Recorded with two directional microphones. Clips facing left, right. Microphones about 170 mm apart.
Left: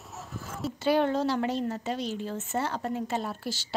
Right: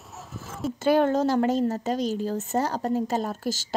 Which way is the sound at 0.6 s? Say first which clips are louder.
Right 4 dB; 45° right (ahead or behind).